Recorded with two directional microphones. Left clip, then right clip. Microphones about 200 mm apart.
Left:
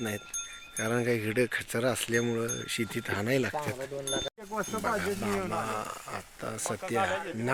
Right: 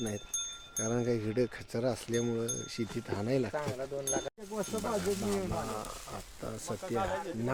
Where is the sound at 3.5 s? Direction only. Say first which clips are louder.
Left 2 dB; 40° left (ahead or behind).